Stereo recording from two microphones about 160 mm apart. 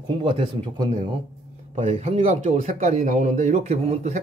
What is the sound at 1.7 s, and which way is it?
Speech, 45° right (ahead or behind).